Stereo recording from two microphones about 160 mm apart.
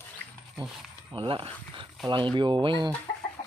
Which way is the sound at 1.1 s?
35° right (ahead or behind).